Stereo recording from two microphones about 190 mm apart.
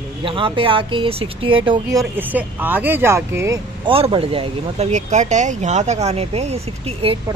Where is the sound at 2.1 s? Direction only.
10° right (ahead or behind).